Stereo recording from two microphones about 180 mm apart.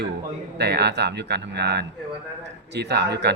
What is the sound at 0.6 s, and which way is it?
Speech, 65° right (ahead or behind).